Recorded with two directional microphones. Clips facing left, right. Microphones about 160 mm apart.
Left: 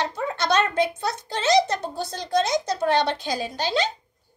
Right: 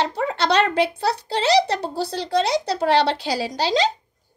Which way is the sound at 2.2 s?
70° right (ahead or behind).